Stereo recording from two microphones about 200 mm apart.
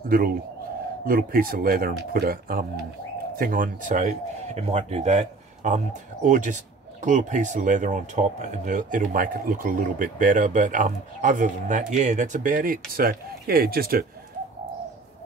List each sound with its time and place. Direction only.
1.0 s speech: 45° right (ahead or behind)